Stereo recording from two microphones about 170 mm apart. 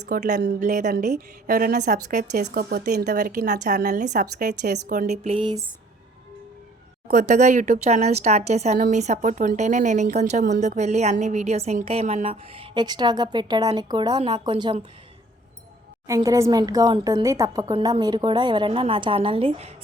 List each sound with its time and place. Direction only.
0.0 s speech: 50° right (ahead or behind)
2.4 s speech: 65° right (ahead or behind); by 3.8 s 45° right (ahead or behind)
3.8 s speech: 65° right (ahead or behind)
4.0 s speech: 45° right (ahead or behind)
5.2 s a woman's voice: 30° right (ahead or behind)
7.1 s a woman's voice: 45° right (ahead or behind); by 14.8 s 30° right (ahead or behind)
16.0 s a woman's voice: 20° right (ahead or behind); by 19.7 s 35° right (ahead or behind)